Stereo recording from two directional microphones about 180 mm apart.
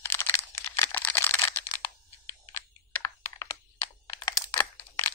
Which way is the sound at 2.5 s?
15° left (ahead or behind).